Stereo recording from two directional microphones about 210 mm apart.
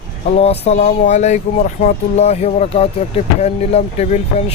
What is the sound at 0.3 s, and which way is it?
Speech, 30° left (ahead or behind).